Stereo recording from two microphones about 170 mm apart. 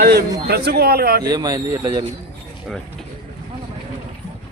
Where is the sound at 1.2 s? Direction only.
20° right (ahead or behind).